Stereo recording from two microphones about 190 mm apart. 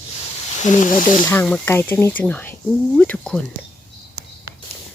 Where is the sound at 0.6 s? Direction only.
40° left (ahead or behind).